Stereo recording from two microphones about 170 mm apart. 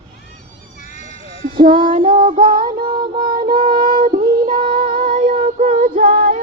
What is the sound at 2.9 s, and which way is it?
Child singing, 25° right (ahead or behind).